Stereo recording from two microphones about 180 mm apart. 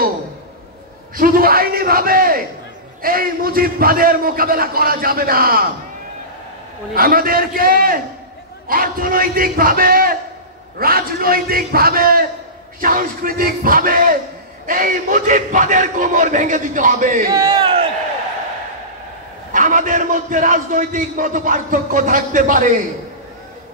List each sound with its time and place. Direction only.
1.1 s a man's voice: 55° right (ahead or behind)
6.9 s a man's voice: 55° right (ahead or behind)
17.5 s a sound: 30° right (ahead or behind)
19.5 s a man's voice: 45° right (ahead or behind)